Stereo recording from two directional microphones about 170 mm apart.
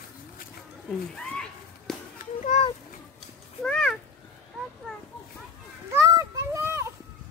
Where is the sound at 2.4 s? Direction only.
45° left (ahead or behind).